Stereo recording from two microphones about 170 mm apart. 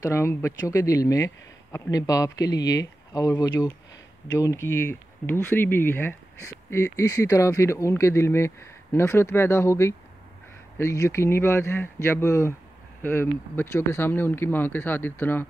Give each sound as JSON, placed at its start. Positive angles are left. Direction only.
{"t": 0.0, "sound": "speech", "side_deg": 15}